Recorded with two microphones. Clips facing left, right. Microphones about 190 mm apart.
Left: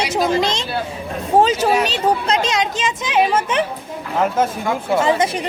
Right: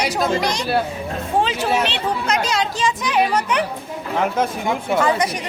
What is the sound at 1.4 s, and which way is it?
Speech, 45° left (ahead or behind).